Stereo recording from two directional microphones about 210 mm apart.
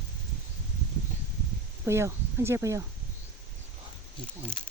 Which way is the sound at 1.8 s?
10° right (ahead or behind).